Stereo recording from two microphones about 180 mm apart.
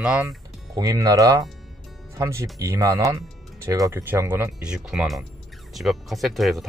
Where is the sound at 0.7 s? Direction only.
20° right (ahead or behind).